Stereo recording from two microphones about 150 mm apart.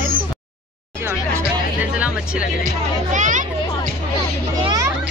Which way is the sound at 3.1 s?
55° right (ahead or behind).